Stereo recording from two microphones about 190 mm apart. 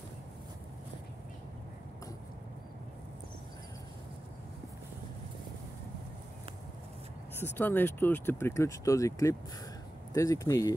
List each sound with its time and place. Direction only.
7.3 s speech: 10° left (ahead or behind)